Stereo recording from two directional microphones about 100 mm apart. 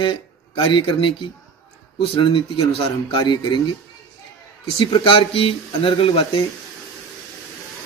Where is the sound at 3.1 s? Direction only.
50° left (ahead or behind).